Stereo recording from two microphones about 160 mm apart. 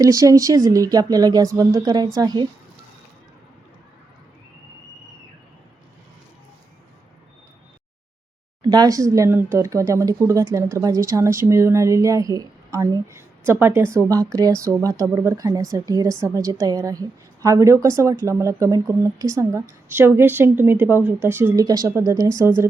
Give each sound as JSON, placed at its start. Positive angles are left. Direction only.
{"t": 0.0, "sound": "a woman's voice", "side_deg": -20}
{"t": 8.7, "sound": "a woman's voice", "side_deg": -25}